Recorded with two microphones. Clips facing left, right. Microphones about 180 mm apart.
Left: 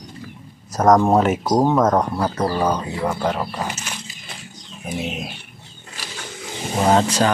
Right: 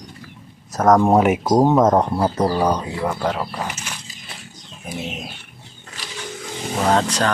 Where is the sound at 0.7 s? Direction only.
5° right (ahead or behind).